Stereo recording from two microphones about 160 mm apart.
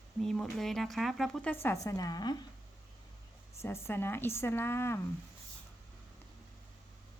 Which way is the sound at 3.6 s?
15° left (ahead or behind).